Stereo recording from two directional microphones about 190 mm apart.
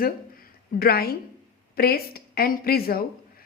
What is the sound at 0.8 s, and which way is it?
Speech, 55° left (ahead or behind).